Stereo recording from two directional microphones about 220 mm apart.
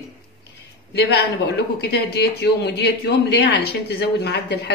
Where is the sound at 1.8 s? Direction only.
50° left (ahead or behind).